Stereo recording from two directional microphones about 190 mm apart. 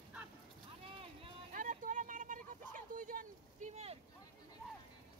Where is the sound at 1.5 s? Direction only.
45° right (ahead or behind).